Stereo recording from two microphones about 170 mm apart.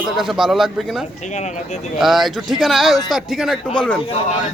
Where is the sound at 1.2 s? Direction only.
45° left (ahead or behind).